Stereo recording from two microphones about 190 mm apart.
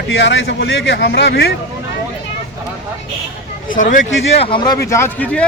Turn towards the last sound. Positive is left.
turn(degrees=5)  # may be behind; listen again after turning